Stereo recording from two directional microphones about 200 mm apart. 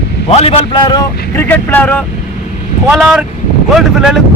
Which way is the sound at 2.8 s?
Centre (ahead or behind).